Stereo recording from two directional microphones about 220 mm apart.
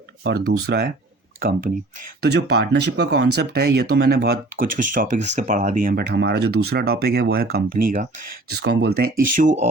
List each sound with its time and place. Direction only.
0.3 s speech: 45° right (ahead or behind)
2.2 s speech: 45° right (ahead or behind)